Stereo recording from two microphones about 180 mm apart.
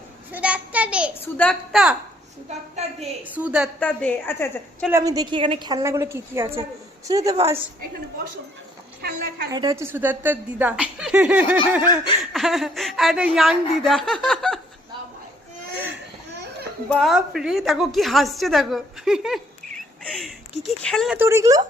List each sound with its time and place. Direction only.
0.3 s a sound: 10° right (ahead or behind)
1.2 s a woman's voice: 5° left (ahead or behind)
2.5 s a woman's voice: 35° right (ahead or behind)
3.3 s a woman's voice: 5° right (ahead or behind)
3.8 s a woman's voice: 10° left (ahead or behind)
4.9 s a woman's voice: 20° right (ahead or behind)
9.0 s a woman's voice: 60° right (ahead or behind)
9.5 s a woman's voice: 20° right (ahead or behind); by 14.6 s 5° left (ahead or behind)
16.9 s a woman's voice: centre (ahead or behind)
21.2 s a woman's voice: 15° right (ahead or behind)